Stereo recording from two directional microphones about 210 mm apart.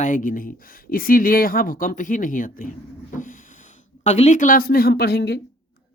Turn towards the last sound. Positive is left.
turn(degrees=50)  # may be behind; listen again after turning